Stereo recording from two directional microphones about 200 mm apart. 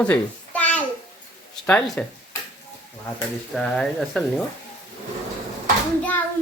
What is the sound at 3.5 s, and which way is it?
Speech, 5° left (ahead or behind).